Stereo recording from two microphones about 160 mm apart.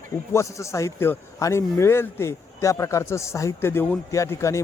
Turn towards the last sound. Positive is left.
turn(degrees=20)  # may be behind; listen again after turning